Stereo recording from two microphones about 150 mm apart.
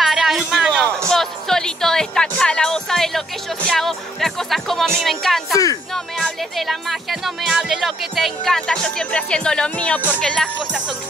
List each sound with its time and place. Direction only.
0.0 s speech: centre (ahead or behind)
5.5 s speech: 25° left (ahead or behind)
6.1 s speech: centre (ahead or behind)